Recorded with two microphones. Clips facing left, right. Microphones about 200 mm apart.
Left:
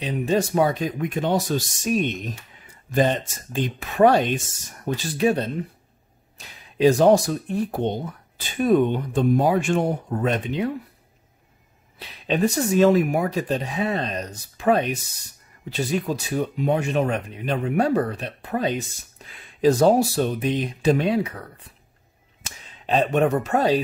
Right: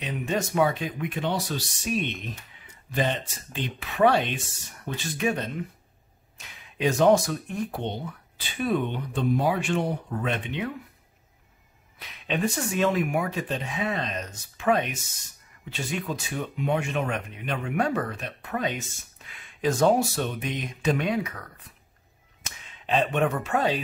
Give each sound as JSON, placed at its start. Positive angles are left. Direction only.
{"t": 0.0, "sound": "speech", "side_deg": 35}
{"t": 12.0, "sound": "speech", "side_deg": 35}